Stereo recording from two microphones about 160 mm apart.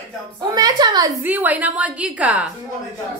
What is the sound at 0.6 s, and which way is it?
Speech, 25° right (ahead or behind).